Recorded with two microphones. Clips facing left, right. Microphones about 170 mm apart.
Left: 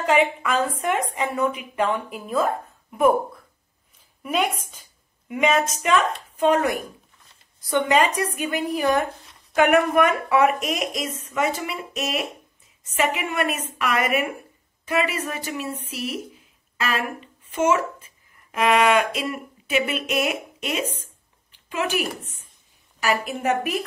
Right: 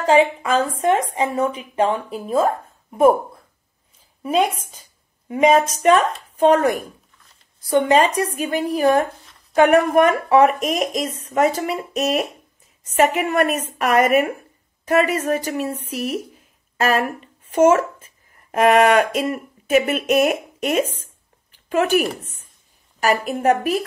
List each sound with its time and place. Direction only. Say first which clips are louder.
0.0 s a woman's voice: right 4 dB; 30° right (ahead or behind)
4.2 s a woman's voice: right 5 dB; 30° right (ahead or behind); by 20.8 s 45° right (ahead or behind)
21.5 s a sound: right 8 dB; 45° right (ahead or behind)
23.0 s a woman's voice: right 5 dB; 40° right (ahead or behind)